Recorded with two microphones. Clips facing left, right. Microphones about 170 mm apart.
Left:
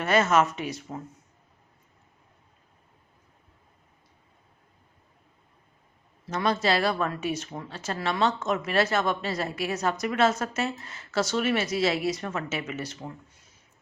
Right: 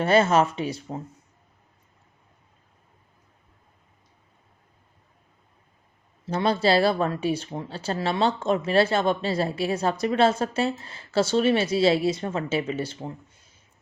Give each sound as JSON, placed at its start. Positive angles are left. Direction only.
{"t": 0.0, "sound": "speech", "side_deg": -30}
{"t": 6.2, "sound": "speech", "side_deg": -30}